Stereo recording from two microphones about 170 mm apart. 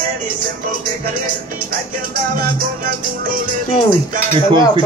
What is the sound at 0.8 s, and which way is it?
Music, 55° right (ahead or behind).